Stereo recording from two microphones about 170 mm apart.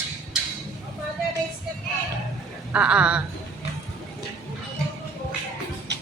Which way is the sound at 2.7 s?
5° right (ahead or behind).